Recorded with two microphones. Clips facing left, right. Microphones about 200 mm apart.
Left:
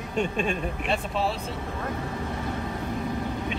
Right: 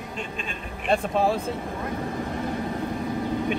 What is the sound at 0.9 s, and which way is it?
Speech, 50° right (ahead or behind).